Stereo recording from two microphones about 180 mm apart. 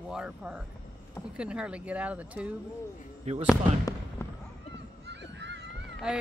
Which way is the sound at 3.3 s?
35° right (ahead or behind).